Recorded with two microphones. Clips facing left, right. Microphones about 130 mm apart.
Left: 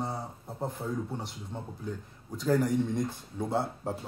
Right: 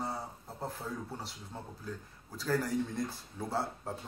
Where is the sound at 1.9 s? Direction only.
20° left (ahead or behind).